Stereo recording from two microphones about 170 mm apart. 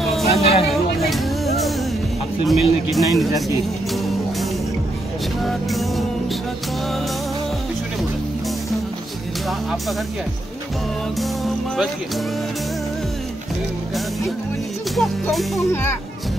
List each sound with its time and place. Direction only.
0.4 s a sound: 35° left (ahead or behind)
1.0 s music: centre (ahead or behind)
2.4 s speech: centre (ahead or behind)
3.9 s music: centre (ahead or behind)
9.5 s music: centre (ahead or behind)
11.1 s speech: centre (ahead or behind)
15.0 s speech: 5° left (ahead or behind)